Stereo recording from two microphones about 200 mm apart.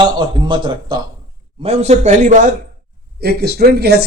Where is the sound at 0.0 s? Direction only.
25° right (ahead or behind); by 2.6 s 40° right (ahead or behind).